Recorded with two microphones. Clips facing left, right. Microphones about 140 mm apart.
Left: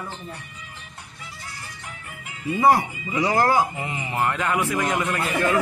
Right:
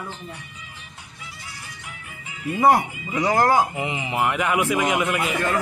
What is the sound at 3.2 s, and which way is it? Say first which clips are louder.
A man's voice: right 1 dB; 20° right (ahead or behind).